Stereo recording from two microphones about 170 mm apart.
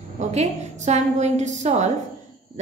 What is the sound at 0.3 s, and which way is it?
A woman's voice, 45° right (ahead or behind).